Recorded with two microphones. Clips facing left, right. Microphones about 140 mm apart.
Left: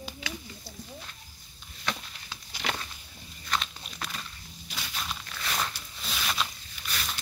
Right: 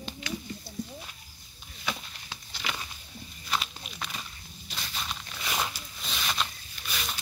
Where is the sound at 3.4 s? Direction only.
5° right (ahead or behind).